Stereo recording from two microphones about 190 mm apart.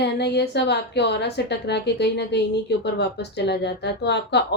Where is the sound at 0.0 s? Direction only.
60° left (ahead or behind).